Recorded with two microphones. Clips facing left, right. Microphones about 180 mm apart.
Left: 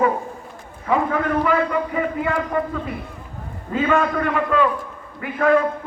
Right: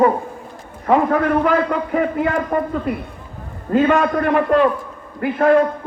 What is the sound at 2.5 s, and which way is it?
Speech, 50° right (ahead or behind).